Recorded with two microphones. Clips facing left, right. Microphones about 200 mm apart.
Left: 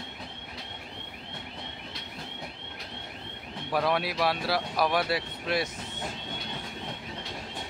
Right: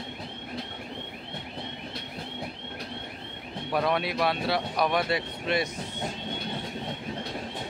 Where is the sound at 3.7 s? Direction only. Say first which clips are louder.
Right 1 dB; centre (ahead or behind).